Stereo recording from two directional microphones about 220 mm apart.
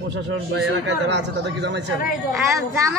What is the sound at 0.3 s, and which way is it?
A man's voice, 55° right (ahead or behind).